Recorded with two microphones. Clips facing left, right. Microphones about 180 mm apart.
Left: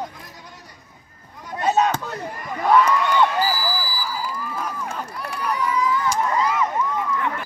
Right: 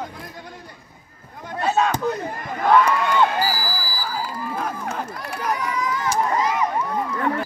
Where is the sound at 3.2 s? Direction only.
45° right (ahead or behind).